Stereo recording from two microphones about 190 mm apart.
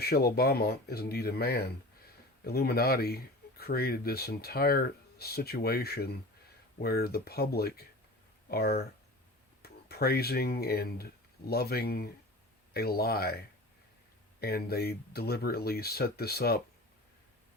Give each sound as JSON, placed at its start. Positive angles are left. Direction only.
{"t": 0.0, "sound": "speech", "side_deg": 55}
{"t": 14.4, "sound": "speech", "side_deg": 55}